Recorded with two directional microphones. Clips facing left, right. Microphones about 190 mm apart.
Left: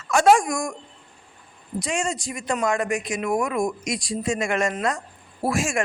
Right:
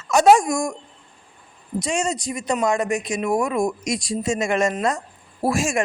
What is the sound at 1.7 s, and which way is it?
Speech, 20° right (ahead or behind).